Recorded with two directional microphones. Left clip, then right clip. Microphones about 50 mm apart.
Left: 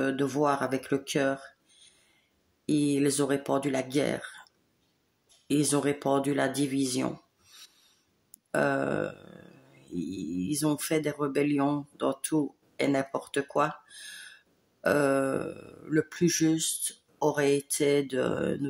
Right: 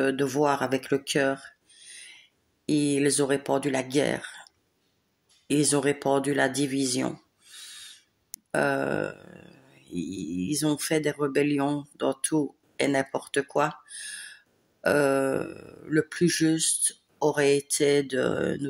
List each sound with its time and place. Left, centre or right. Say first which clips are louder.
0.0 s speech: right 3 dB; left
5.5 s speech: right 3 dB; left
7.1 s a sound: right 2 dB; left
8.5 s speech: right 2 dB; left